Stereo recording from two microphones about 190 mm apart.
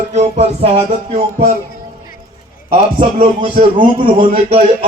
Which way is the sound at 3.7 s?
30° right (ahead or behind).